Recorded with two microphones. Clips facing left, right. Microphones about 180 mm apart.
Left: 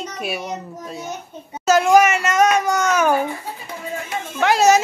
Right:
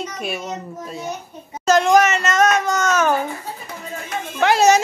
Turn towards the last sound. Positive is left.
turn(degrees=0)  # may be behind; listen again after turning